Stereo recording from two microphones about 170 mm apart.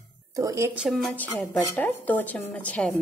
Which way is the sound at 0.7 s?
5° right (ahead or behind).